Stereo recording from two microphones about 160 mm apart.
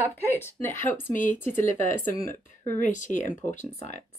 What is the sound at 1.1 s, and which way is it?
Speech, 55° left (ahead or behind).